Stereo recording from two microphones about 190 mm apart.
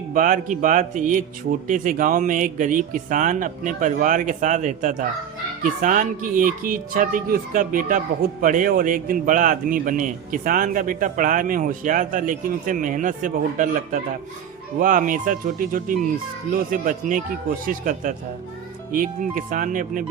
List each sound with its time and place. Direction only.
0.1 s speech: 45° right (ahead or behind)